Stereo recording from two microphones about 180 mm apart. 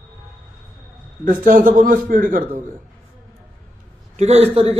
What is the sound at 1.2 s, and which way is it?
A man's voice, 50° right (ahead or behind).